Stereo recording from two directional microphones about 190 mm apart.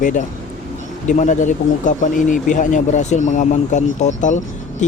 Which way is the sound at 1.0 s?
40° left (ahead or behind).